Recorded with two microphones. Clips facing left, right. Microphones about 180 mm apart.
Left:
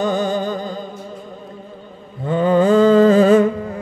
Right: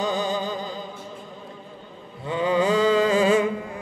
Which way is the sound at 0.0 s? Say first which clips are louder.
Left 6 dB; 55° left (ahead or behind).